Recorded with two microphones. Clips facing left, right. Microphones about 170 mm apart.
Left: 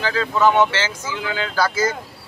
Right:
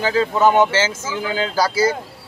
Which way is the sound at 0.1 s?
35° right (ahead or behind).